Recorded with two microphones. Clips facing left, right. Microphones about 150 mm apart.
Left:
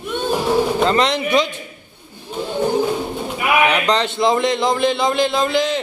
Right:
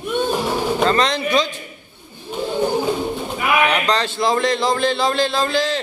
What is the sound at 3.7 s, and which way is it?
A man's voice, 15° left (ahead or behind).